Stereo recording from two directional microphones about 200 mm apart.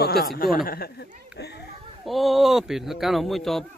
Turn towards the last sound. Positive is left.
turn(degrees=0)  # may be behind; listen again after turning